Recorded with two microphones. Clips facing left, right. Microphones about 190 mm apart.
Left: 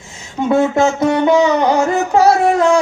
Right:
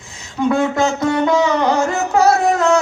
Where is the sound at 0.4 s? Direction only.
25° left (ahead or behind).